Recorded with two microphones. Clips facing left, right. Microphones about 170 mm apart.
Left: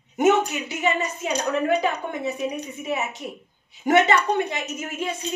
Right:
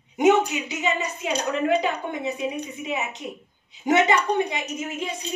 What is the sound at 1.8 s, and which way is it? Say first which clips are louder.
A woman's voice: left 1 dB; 20° right (ahead or behind).